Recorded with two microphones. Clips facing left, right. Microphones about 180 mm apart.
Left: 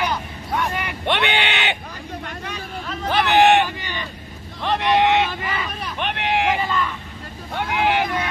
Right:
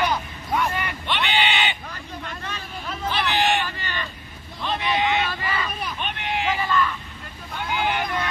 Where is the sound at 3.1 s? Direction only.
65° left (ahead or behind).